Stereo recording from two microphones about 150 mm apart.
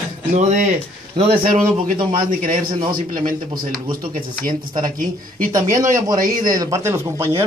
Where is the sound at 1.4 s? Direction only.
70° right (ahead or behind).